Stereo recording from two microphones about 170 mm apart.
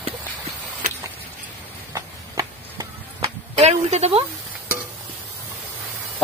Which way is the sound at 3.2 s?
35° right (ahead or behind).